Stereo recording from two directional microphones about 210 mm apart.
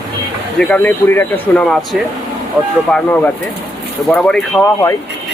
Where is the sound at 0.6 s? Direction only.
5° left (ahead or behind).